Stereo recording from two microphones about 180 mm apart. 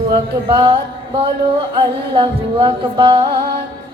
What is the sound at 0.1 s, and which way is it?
Speech, 25° right (ahead or behind).